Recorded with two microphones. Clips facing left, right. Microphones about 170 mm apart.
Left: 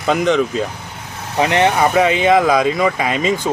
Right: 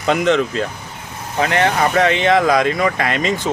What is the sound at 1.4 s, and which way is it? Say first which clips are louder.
Speech: left 2 dB; 20° left (ahead or behind).